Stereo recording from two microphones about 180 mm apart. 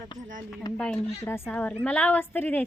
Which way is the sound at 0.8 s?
10° left (ahead or behind).